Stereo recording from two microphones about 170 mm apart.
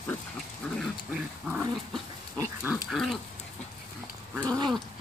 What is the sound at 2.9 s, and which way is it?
Dog, centre (ahead or behind).